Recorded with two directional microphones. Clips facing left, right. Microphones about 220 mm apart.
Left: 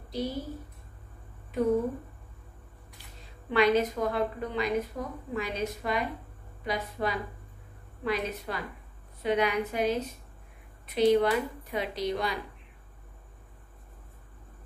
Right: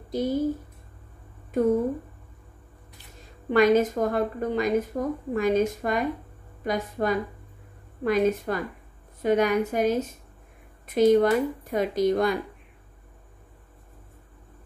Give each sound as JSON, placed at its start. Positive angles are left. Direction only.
{"t": 0.1, "sound": "a woman's voice", "side_deg": -45}
{"t": 1.5, "sound": "a woman's voice", "side_deg": -50}
{"t": 3.4, "sound": "a woman's voice", "side_deg": -45}